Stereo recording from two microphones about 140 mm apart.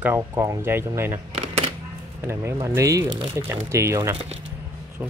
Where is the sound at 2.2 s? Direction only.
20° right (ahead or behind).